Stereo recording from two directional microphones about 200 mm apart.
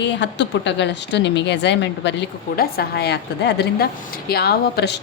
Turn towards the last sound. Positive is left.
turn(degrees=50)  # may be behind; listen again after turning